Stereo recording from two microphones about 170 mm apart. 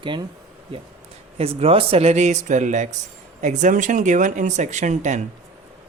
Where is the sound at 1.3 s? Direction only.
35° right (ahead or behind).